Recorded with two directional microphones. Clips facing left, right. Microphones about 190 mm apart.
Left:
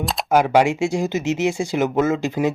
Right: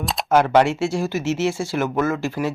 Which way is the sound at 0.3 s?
10° left (ahead or behind).